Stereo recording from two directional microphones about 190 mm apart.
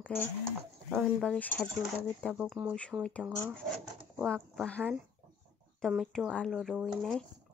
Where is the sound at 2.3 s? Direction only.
5° right (ahead or behind).